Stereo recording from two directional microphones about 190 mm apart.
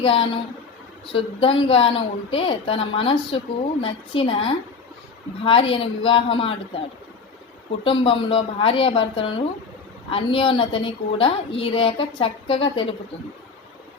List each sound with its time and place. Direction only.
0.0 s a woman's voice: 30° left (ahead or behind)
7.9 s a woman's voice: 30° left (ahead or behind)